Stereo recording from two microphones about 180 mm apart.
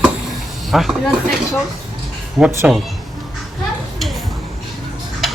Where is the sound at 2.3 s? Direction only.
5° right (ahead or behind).